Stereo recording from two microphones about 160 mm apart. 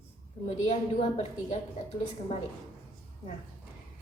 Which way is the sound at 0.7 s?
40° left (ahead or behind).